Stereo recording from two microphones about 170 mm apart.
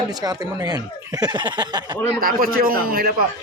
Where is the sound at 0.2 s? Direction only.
25° right (ahead or behind).